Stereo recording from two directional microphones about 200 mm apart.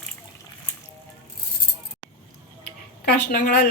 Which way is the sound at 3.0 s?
55° left (ahead or behind).